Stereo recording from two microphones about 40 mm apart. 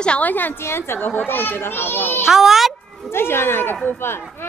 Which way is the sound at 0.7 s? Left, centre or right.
Left.